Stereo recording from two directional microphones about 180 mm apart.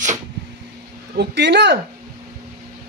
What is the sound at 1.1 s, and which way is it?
Speech, 70° right (ahead or behind).